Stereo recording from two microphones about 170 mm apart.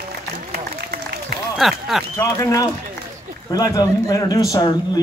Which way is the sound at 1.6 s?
Centre (ahead or behind).